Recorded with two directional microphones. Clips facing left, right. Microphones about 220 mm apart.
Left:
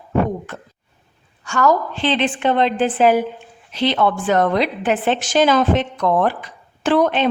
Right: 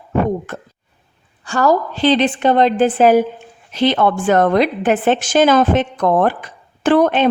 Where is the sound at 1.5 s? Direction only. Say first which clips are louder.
Right 2 dB; 35° right (ahead or behind).